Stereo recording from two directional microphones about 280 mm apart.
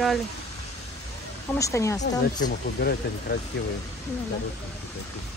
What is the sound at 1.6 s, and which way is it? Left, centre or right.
Speech, centre.